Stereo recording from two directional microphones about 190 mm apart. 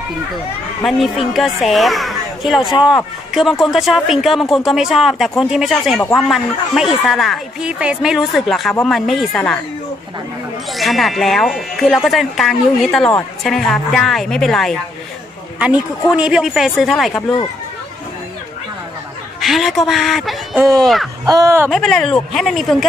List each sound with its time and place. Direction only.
0.8 s speech: centre (ahead or behind)
10.7 s speech: centre (ahead or behind)
19.4 s speech: centre (ahead or behind)
21.3 s speech: 15° right (ahead or behind)
21.6 s speech: centre (ahead or behind)